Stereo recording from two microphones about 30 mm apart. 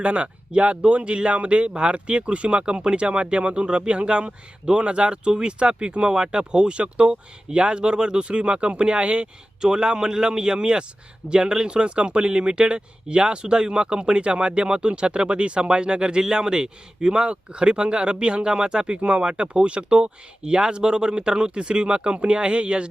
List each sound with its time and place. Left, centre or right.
0.0 s speech: right
2.6 s speech: right
9.6 s a man's voice: right